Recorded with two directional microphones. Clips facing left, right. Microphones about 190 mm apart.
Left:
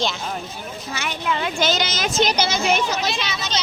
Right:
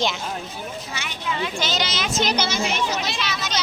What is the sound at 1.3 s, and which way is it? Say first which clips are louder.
Speech: left 4 dB; 55° left (ahead or behind).